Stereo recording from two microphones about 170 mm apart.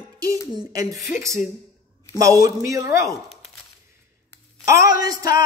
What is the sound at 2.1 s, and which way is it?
Speech, 20° right (ahead or behind).